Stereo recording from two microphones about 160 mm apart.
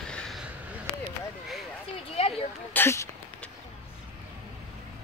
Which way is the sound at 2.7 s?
15° left (ahead or behind).